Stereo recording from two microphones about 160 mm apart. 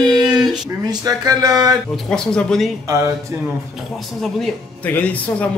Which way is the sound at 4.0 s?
Centre (ahead or behind).